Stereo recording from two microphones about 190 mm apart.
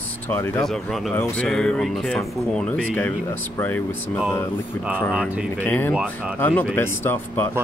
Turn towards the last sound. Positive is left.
turn(degrees=10)  # may be behind; listen again after turning